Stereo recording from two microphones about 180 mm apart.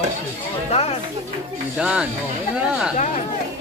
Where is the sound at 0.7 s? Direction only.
35° left (ahead or behind).